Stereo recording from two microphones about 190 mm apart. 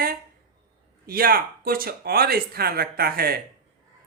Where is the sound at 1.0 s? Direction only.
50° right (ahead or behind).